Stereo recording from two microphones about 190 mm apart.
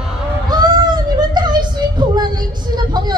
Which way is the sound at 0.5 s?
20° right (ahead or behind).